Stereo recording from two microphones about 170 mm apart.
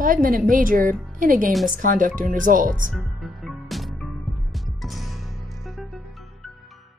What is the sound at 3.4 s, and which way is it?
Music, centre (ahead or behind).